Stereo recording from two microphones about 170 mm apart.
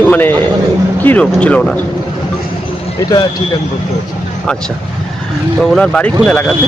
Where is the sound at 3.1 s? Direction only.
20° left (ahead or behind).